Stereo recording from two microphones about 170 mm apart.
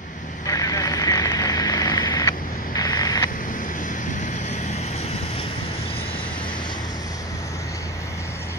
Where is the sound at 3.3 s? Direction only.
50° left (ahead or behind).